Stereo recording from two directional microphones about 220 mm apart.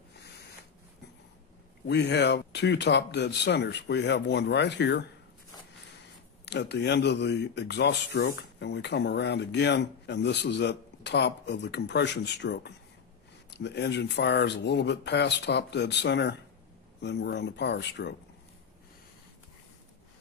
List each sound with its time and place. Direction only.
1.9 s speech: 50° left (ahead or behind)
6.4 s speech: 50° left (ahead or behind)